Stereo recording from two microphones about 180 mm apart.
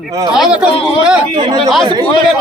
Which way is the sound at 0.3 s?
Centre (ahead or behind).